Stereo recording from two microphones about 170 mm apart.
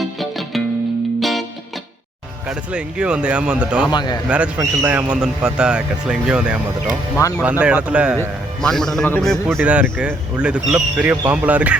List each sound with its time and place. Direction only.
0.2 s music: centre (ahead or behind)
2.5 s speech: 5° right (ahead or behind)
3.8 s a man's voice: 25° left (ahead or behind)
4.3 s a man's voice: 5° right (ahead or behind)
7.2 s a man's voice: 20° left (ahead or behind)
7.6 s a man's voice: 5° right (ahead or behind)